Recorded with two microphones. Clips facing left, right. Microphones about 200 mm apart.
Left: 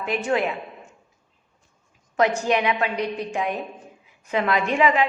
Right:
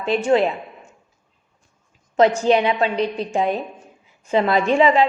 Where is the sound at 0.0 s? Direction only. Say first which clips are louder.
Right 6 dB; 30° right (ahead or behind).